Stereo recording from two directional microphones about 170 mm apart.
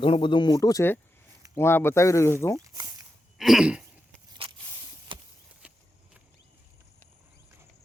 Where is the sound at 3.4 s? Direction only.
Centre (ahead or behind).